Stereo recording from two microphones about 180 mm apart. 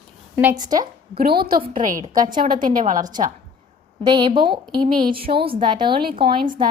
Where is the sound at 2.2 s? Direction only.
25° right (ahead or behind).